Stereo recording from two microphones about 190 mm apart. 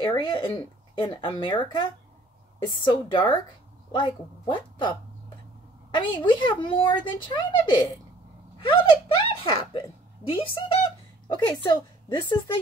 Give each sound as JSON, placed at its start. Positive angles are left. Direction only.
{"t": 0.0, "sound": "speech", "side_deg": 25}
{"t": 5.9, "sound": "speech", "side_deg": 25}